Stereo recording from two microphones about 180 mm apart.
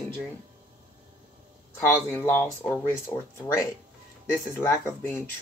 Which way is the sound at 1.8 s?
10° left (ahead or behind).